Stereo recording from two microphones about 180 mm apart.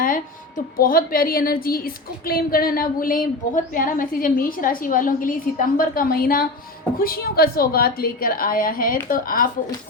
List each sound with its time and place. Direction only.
0.0 s a woman's voice: 50° left (ahead or behind)